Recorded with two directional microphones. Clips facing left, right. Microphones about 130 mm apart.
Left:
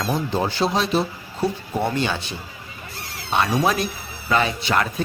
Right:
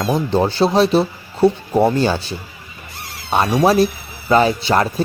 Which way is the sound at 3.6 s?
35° right (ahead or behind).